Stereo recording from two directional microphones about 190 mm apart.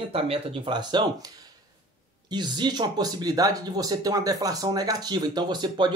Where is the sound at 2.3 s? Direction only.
20° right (ahead or behind).